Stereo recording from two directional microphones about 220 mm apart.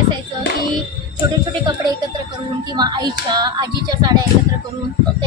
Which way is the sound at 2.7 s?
20° right (ahead or behind).